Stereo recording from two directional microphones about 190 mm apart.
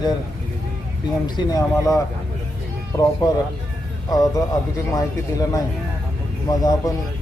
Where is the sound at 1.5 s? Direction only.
20° left (ahead or behind).